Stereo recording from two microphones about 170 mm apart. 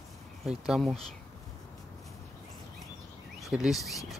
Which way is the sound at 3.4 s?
Centre (ahead or behind).